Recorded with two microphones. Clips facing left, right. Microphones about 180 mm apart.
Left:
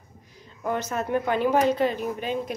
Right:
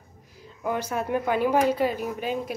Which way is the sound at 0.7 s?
10° right (ahead or behind).